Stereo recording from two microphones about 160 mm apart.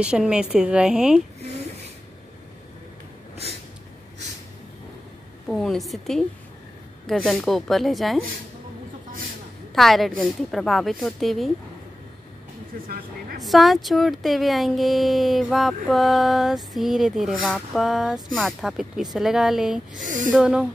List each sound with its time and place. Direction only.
0.0 s speech: 5° right (ahead or behind)
5.5 s speech: centre (ahead or behind)
9.8 s speech: centre (ahead or behind)
12.7 s speech: 65° right (ahead or behind)
13.4 s speech: centre (ahead or behind)
20.0 s speech: 55° right (ahead or behind)
20.3 s speech: 5° right (ahead or behind)